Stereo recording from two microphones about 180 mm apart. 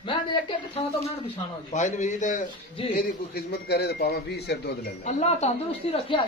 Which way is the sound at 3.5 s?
60° left (ahead or behind).